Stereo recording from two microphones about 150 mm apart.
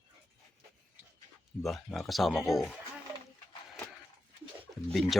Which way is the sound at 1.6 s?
Centre (ahead or behind).